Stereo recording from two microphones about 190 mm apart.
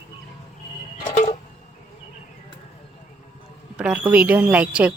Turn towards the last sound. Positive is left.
turn(degrees=-5)  # may be behind; listen again after turning